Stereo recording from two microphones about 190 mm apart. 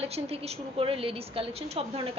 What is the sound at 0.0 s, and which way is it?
A woman's voice, 30° right (ahead or behind).